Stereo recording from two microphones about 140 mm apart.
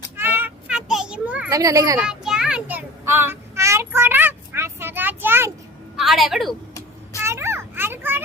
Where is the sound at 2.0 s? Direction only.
5° right (ahead or behind).